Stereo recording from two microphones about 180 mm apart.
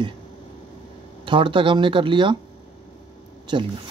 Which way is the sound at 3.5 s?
25° right (ahead or behind).